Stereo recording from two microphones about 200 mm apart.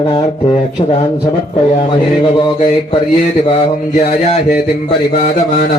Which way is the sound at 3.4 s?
30° left (ahead or behind).